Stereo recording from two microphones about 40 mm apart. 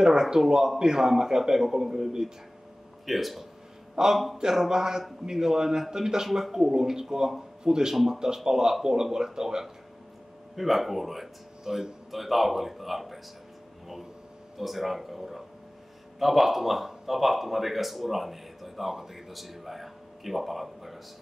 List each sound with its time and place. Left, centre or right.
0.0 s speech: centre
3.1 s speech: centre
3.9 s a man's voice: centre
7.9 s speech: centre
10.5 s speech: centre
14.6 s speech: centre